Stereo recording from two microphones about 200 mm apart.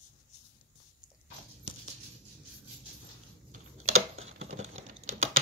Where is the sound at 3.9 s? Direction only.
90° right.